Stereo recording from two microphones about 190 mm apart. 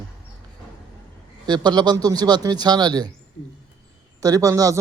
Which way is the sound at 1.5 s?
20° right (ahead or behind).